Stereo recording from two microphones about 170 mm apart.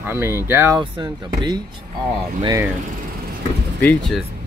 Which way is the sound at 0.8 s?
25° right (ahead or behind).